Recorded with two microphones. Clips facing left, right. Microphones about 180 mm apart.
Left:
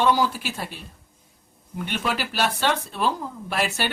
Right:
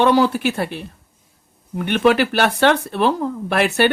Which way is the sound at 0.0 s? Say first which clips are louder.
Right 7 dB; 65° right (ahead or behind).